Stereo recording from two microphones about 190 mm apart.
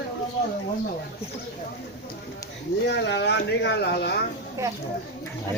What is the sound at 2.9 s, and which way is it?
Speech, 65° left (ahead or behind).